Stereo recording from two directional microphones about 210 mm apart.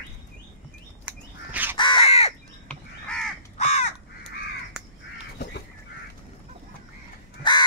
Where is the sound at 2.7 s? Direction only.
5° left (ahead or behind).